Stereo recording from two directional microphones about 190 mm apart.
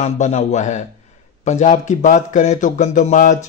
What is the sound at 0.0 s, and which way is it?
Speech, 35° left (ahead or behind).